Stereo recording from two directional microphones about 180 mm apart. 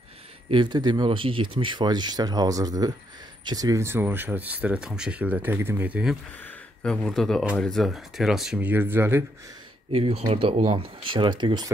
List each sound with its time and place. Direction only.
0.5 s speech: 25° right (ahead or behind); by 6.1 s 10° right (ahead or behind)
6.4 s speech: 5° left (ahead or behind); by 9.2 s 10° right (ahead or behind)
9.9 s speech: 30° right (ahead or behind)